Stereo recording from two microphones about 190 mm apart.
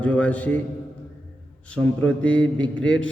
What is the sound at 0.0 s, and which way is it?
Speech, 5° left (ahead or behind).